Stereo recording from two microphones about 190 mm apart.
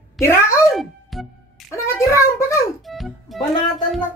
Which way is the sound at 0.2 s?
15° left (ahead or behind).